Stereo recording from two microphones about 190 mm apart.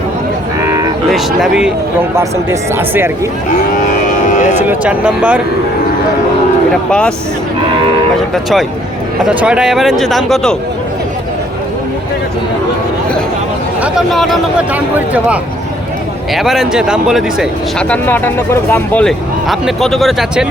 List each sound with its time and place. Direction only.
1.1 s speech: 5° right (ahead or behind)
2.1 s speech: 15° right (ahead or behind)
3.8 s cattle: 45° left (ahead or behind)
4.7 s speech: 5° right (ahead or behind)
9.2 s speech: 5° right (ahead or behind)
13.8 s speech: centre (ahead or behind)
17.7 s speech: 5° left (ahead or behind)